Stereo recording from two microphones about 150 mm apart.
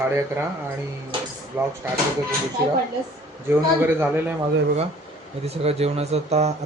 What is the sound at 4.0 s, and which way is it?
Speech, 15° right (ahead or behind).